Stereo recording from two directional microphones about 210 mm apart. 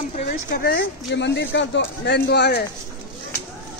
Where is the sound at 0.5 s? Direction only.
45° left (ahead or behind).